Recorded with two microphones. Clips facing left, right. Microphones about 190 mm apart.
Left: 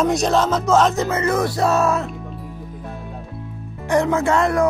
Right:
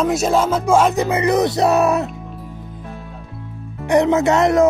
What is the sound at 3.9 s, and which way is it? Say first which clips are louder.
Speech: right 3 dB; 20° right (ahead or behind).